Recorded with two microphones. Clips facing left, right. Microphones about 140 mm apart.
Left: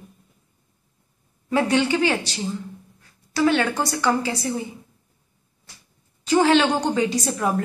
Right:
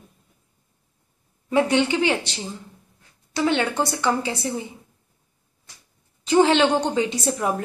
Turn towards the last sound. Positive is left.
turn(degrees=-15)  # may be behind; listen again after turning